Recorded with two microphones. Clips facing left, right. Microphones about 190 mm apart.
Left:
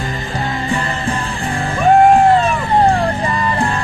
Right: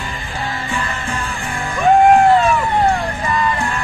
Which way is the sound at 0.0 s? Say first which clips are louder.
Left 4 dB; 40° left (ahead or behind).